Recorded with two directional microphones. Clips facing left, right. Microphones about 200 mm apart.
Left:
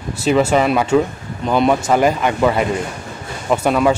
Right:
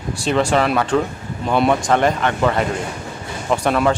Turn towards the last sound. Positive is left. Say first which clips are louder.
# left 2 dB
turn(degrees=5)  # may be behind; listen again after turning